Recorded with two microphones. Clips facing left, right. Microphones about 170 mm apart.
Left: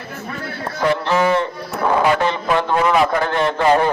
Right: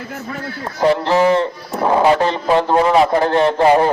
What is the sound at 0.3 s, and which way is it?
A man's voice, 25° right (ahead or behind).